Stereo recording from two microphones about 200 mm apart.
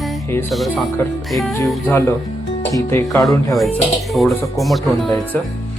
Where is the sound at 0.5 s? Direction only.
Centre (ahead or behind).